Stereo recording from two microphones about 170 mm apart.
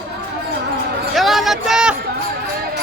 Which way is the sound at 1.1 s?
Centre (ahead or behind).